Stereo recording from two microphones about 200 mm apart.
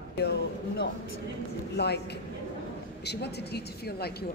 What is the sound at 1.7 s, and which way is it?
A woman's voice, 55° left (ahead or behind).